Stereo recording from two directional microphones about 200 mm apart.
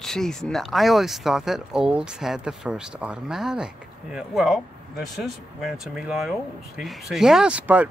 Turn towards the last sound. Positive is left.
turn(degrees=-5)  # may be behind; listen again after turning